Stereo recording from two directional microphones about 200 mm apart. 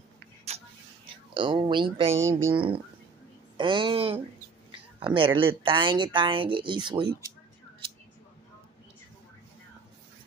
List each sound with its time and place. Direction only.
1.0 s speech: 25° right (ahead or behind)
2.1 s speech: 15° right (ahead or behind)